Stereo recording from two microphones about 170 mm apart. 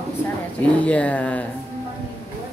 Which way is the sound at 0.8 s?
10° left (ahead or behind).